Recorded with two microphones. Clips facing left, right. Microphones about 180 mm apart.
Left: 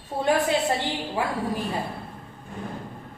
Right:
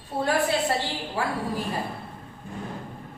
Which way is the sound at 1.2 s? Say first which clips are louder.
Left 1 dB; 20° left (ahead or behind).